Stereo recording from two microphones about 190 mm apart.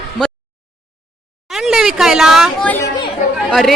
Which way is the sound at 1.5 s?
Centre (ahead or behind).